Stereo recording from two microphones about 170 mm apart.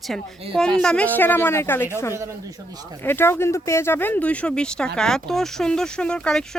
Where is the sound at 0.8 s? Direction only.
5° left (ahead or behind).